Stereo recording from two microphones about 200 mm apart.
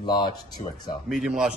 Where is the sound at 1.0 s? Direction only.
Centre (ahead or behind).